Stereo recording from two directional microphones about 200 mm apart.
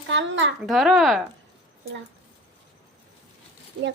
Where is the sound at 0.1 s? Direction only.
65° right (ahead or behind).